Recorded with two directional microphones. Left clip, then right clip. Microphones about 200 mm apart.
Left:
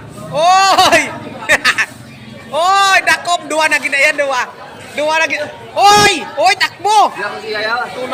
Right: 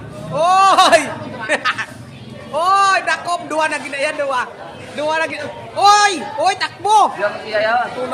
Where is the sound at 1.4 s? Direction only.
10° left (ahead or behind).